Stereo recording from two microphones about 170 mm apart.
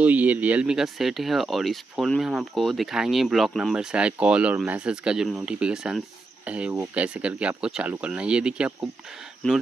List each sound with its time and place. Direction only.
0.0 s speech: 10° right (ahead or behind)